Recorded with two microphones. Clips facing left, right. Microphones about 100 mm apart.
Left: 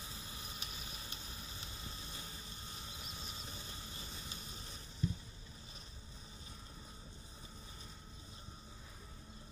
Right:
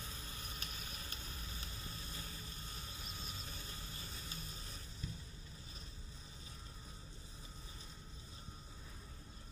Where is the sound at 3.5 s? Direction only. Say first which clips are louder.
Left 1 dB; 20° left (ahead or behind).